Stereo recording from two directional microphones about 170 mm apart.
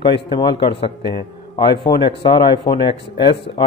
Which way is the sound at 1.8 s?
30° left (ahead or behind).